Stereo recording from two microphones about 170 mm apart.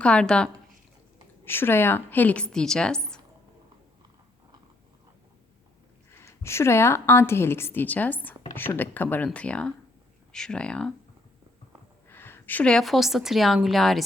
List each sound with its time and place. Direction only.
0.0 s a woman's voice: 5° left (ahead or behind)
6.1 s a woman's voice: 15° left (ahead or behind)
12.0 s a woman's voice: 15° left (ahead or behind)